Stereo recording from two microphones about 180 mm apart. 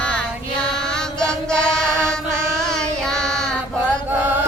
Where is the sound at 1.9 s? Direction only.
15° right (ahead or behind).